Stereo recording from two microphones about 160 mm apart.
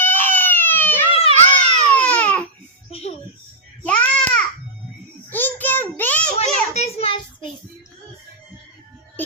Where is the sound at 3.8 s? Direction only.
5° left (ahead or behind).